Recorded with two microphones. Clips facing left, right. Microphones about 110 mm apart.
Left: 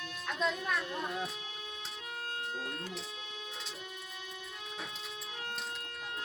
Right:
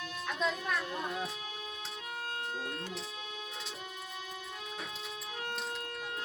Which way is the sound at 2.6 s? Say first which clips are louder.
Right 1 dB; centre (ahead or behind).